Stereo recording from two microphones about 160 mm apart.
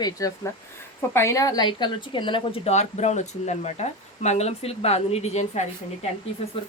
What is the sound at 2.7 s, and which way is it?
Speech, 45° left (ahead or behind).